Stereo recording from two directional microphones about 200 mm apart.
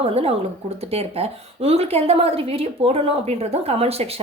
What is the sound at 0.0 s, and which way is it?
A woman's voice, 30° right (ahead or behind).